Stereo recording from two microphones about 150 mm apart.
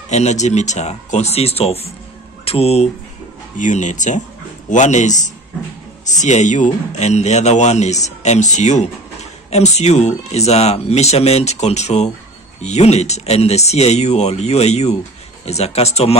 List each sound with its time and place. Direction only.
0.1 s a man's voice: 50° left (ahead or behind)
3.5 s a man's voice: 55° left (ahead or behind)